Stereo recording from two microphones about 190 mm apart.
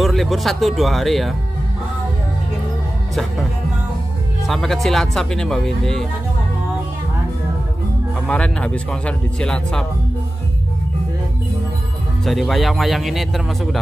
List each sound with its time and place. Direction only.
0.0 s speech: centre (ahead or behind)
4.5 s speech: centre (ahead or behind)
8.3 s speech: 5° left (ahead or behind)
12.3 s speech: centre (ahead or behind)